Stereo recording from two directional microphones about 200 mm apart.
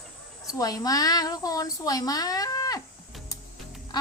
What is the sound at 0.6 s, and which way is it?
A woman's voice, 20° left (ahead or behind).